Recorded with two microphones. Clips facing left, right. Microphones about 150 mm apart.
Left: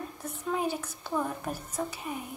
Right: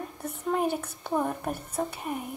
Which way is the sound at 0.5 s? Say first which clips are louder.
Right 3 dB; 60° right (ahead or behind).